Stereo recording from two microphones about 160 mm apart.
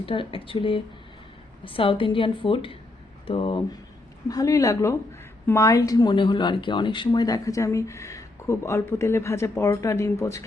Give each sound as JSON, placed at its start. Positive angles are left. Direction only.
{"t": 0.0, "sound": "a woman's voice", "side_deg": 35}